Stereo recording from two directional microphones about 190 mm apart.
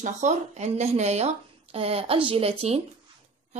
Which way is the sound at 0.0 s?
40° right (ahead or behind).